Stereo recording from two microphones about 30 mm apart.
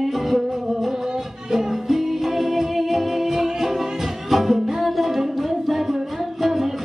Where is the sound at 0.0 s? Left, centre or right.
Centre.